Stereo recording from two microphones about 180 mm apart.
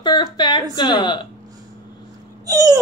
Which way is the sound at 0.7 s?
25° left (ahead or behind).